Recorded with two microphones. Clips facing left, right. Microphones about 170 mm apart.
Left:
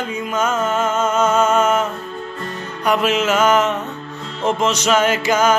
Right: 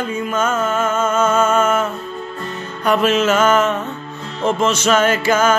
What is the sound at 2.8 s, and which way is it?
Music, 10° left (ahead or behind).